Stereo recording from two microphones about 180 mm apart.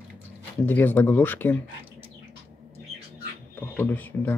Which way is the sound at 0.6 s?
10° left (ahead or behind).